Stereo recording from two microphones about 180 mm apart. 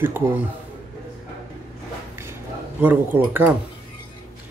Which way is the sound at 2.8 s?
10° right (ahead or behind).